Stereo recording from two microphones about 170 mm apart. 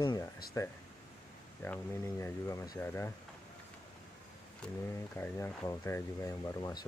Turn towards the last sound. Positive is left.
turn(degrees=20)  # may be behind; listen again after turning